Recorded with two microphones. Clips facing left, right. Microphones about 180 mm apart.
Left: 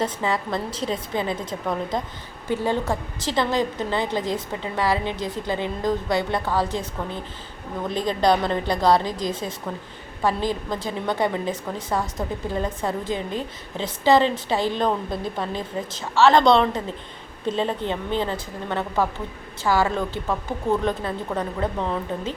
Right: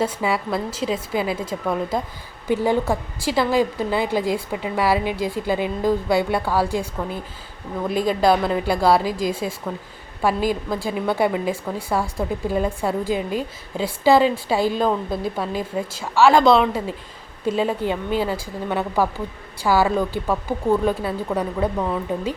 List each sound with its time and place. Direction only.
0.0 s a woman's voice: 10° right (ahead or behind)